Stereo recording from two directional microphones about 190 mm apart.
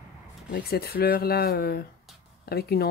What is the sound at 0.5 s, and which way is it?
Speech, 55° left (ahead or behind).